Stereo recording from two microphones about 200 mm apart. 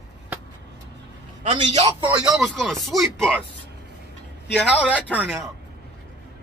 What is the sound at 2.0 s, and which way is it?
Speech, 5° right (ahead or behind).